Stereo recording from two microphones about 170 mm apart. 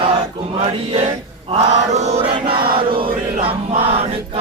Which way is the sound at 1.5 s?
45° right (ahead or behind).